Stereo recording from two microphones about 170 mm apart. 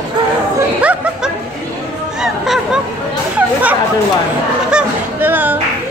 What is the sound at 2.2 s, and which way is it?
Music, 5° right (ahead or behind).